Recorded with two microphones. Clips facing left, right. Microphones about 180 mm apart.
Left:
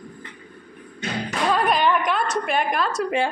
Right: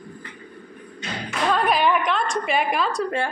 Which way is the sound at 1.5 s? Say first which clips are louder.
Even; centre (ahead or behind).